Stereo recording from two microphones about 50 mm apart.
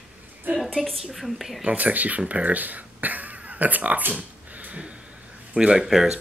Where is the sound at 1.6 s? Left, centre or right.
Right.